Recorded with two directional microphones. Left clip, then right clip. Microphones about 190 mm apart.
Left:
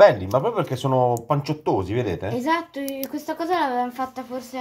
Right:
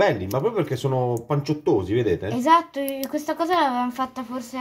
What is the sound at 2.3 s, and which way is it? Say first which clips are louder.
Speech: right 7 dB; 20° right (ahead or behind).